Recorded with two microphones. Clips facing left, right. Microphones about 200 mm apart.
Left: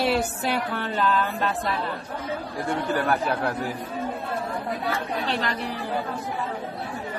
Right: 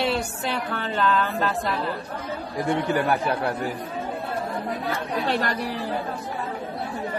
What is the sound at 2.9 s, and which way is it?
Speech, 10° right (ahead or behind).